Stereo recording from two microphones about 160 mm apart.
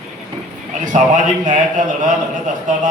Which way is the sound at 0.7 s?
50° right (ahead or behind).